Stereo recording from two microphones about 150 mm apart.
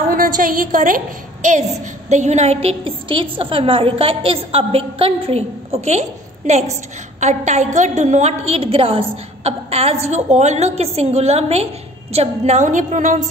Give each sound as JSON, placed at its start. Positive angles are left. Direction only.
{"t": 0.1, "sound": "a woman's voice", "side_deg": -70}